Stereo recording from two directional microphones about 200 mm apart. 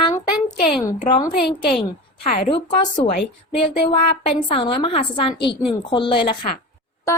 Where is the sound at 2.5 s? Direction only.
25° left (ahead or behind).